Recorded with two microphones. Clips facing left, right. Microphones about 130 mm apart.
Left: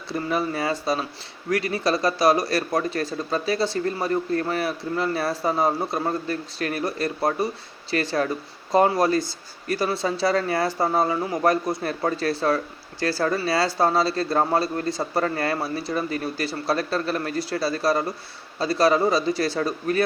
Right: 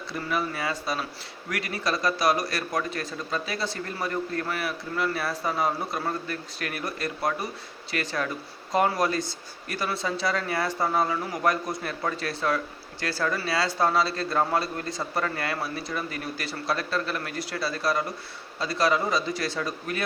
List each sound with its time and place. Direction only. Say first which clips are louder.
0.1 s a man's voice: left 5 dB; 35° left (ahead or behind)